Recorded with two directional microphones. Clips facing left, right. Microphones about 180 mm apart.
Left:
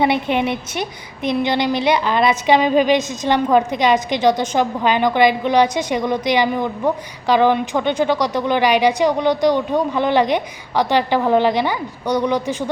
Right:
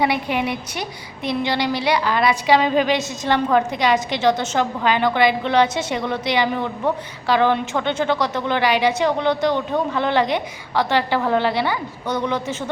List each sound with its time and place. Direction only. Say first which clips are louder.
0.0 s a woman's voice: left 3 dB; 25° left (ahead or behind)